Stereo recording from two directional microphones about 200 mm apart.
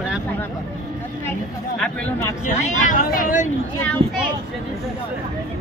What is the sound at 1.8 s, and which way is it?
Speech, 10° left (ahead or behind).